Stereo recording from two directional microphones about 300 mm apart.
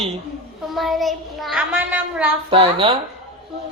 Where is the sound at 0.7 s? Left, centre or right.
Centre.